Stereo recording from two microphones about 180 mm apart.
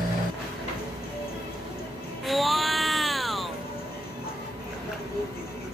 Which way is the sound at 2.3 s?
Centre (ahead or behind).